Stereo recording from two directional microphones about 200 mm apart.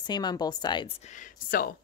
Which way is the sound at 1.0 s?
40° left (ahead or behind).